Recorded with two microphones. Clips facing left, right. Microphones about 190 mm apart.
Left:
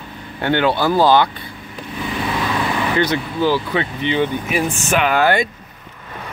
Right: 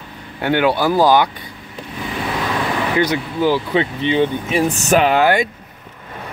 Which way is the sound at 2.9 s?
10° right (ahead or behind).